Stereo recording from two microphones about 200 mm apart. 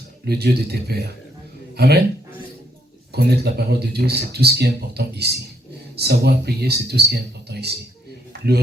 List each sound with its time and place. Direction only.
0.3 s speech: 55° right (ahead or behind)
3.1 s speech: 55° right (ahead or behind)